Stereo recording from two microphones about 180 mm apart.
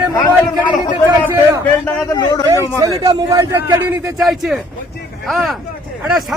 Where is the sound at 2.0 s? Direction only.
20° left (ahead or behind).